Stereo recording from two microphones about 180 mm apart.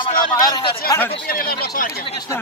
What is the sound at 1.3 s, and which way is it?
Speech, 55° left (ahead or behind).